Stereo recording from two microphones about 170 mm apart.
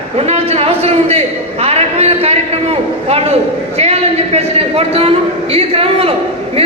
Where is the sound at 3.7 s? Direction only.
35° right (ahead or behind).